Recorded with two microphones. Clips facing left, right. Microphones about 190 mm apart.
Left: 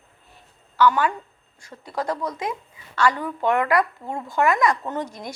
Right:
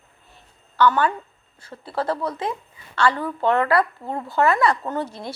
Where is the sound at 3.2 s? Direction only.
15° left (ahead or behind).